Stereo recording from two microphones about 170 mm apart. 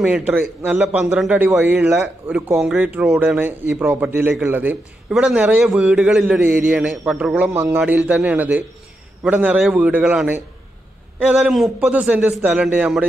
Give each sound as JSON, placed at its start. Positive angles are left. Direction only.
{"t": 0.0, "sound": "a man's voice", "side_deg": -10}